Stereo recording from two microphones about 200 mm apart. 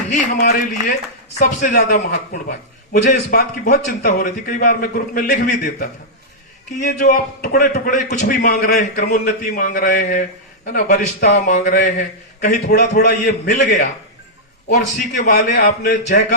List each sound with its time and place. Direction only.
0.1 s a man's voice: 45° left (ahead or behind)
12.6 s a man's voice: 55° left (ahead or behind)
14.7 s a man's voice: 55° left (ahead or behind)